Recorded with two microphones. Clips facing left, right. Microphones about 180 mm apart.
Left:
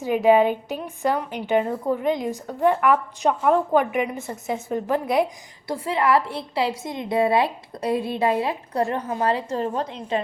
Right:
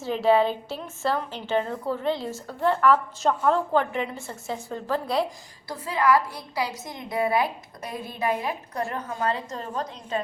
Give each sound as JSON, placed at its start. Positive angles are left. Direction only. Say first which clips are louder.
{"t": 0.0, "sound": "a woman's voice", "louder": "left 4 dB", "side_deg": 15}